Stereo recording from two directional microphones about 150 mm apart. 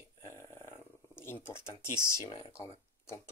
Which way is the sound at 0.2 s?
15° left (ahead or behind).